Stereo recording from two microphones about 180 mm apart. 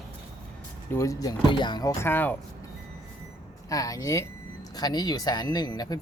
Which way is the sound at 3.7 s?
20° left (ahead or behind).